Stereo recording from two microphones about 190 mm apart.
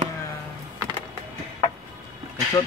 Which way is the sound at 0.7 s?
20° right (ahead or behind).